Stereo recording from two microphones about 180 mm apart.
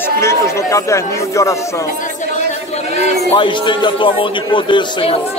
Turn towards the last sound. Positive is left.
turn(degrees=30)  # may be behind; listen again after turning